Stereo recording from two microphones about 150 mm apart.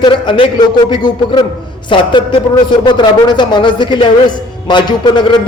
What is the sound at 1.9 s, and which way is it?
A man's voice, 30° left (ahead or behind).